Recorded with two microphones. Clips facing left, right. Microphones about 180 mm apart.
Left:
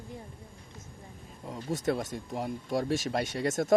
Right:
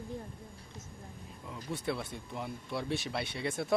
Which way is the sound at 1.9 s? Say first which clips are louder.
Left 6 dB; 40° left (ahead or behind).